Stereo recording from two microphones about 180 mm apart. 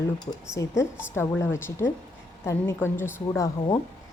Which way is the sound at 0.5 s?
15° left (ahead or behind).